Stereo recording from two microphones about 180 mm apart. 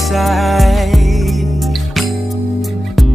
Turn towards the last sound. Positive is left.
turn(degrees=0)  # may be behind; listen again after turning